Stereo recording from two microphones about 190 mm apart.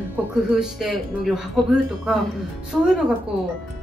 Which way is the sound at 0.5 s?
5° right (ahead or behind).